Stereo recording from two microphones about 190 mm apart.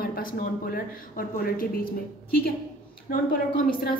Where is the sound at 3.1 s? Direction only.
45° left (ahead or behind).